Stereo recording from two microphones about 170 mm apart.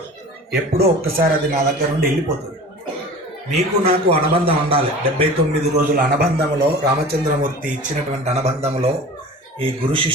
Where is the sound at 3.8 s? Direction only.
35° right (ahead or behind).